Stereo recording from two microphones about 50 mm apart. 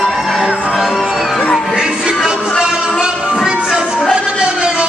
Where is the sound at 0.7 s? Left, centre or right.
Centre.